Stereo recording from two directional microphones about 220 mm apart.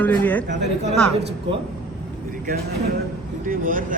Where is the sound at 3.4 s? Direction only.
40° right (ahead or behind).